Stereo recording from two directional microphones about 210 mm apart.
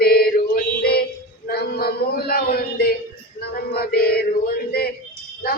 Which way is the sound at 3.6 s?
50° left (ahead or behind).